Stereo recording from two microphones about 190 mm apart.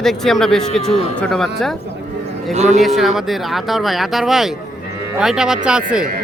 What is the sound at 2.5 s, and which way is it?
Speech, 35° right (ahead or behind).